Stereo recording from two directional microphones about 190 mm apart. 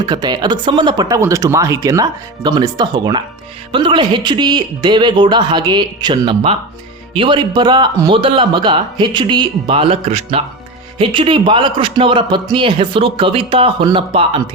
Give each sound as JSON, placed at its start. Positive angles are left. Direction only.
{"t": 0.0, "sound": "speech", "side_deg": -20}